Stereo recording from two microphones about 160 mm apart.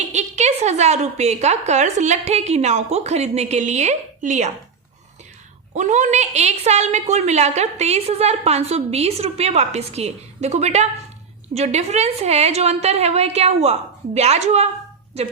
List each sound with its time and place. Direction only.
0.1 s a woman's voice: 45° right (ahead or behind)
5.7 s a woman's voice: 50° right (ahead or behind)